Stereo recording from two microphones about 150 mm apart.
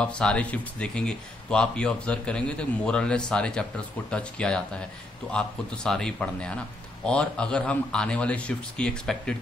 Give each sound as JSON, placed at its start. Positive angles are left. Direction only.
{"t": 0.0, "sound": "speech", "side_deg": 5}